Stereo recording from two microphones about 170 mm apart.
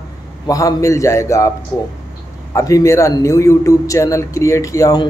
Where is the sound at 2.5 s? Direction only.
20° left (ahead or behind).